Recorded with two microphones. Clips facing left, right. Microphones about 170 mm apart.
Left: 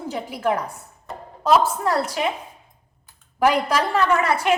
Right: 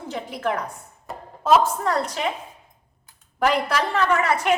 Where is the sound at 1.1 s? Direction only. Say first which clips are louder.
Left 1 dB; centre (ahead or behind).